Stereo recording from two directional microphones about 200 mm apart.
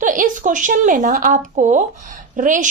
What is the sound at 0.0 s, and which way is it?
A woman's voice, 40° right (ahead or behind).